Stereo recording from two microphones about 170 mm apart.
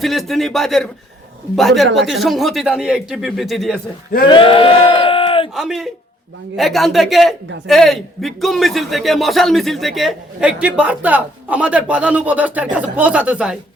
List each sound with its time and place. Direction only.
0.0 s speech: centre (ahead or behind)
4.3 s crowd: 30° left (ahead or behind)
5.5 s speech: centre (ahead or behind)